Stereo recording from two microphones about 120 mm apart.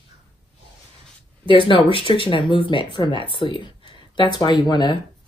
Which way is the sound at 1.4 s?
50° left (ahead or behind).